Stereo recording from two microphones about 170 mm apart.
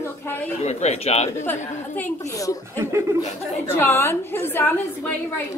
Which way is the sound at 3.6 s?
15° left (ahead or behind).